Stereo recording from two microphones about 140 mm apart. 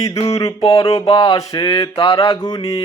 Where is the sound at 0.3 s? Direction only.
25° left (ahead or behind).